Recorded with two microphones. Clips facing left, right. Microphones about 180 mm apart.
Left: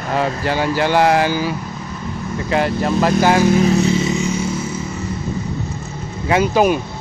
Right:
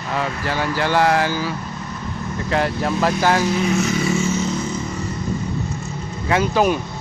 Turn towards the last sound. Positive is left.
turn(degrees=10)  # may be behind; listen again after turning